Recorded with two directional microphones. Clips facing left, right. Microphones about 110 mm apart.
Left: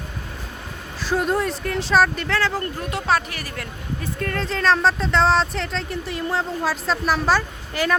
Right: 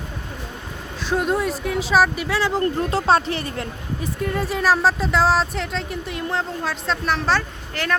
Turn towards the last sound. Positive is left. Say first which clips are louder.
# left 3 dB
turn(degrees=5)  # may be behind; listen again after turning